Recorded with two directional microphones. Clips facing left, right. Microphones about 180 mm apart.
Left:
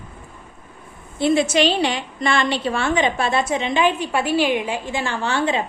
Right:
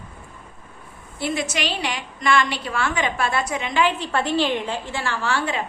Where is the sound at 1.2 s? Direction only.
25° left (ahead or behind).